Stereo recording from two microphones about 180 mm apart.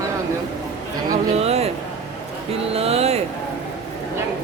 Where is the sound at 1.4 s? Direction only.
35° right (ahead or behind).